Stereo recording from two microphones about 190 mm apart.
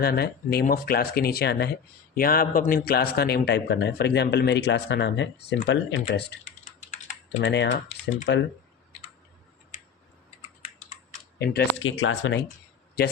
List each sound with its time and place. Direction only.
0.0 s a man's voice: 55° left (ahead or behind)
2.1 s a man's voice: 50° left (ahead or behind); by 6.4 s 70° left (ahead or behind)
6.8 s typing: 35° left (ahead or behind)
7.4 s speech: 65° left (ahead or behind)
11.3 s speech: 75° left (ahead or behind)
13.0 s a man's voice: 55° left (ahead or behind)